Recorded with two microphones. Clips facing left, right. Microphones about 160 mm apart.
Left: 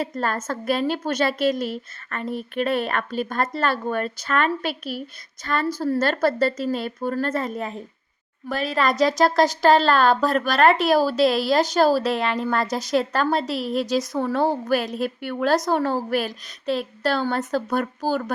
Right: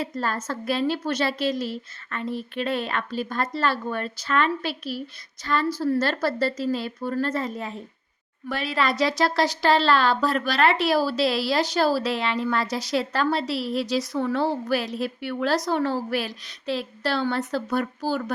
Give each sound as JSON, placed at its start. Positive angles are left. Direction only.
{"t": 0.0, "sound": "a woman's voice", "side_deg": 50}
{"t": 8.4, "sound": "a woman's voice", "side_deg": 40}